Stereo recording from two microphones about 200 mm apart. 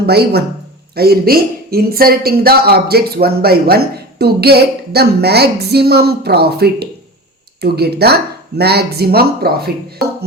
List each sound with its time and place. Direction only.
0.0 s speech: 55° right (ahead or behind)